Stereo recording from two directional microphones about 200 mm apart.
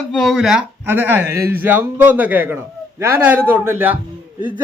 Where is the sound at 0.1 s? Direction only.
Centre (ahead or behind).